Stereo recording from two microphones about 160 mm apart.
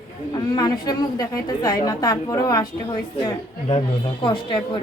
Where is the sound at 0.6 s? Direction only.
25° left (ahead or behind).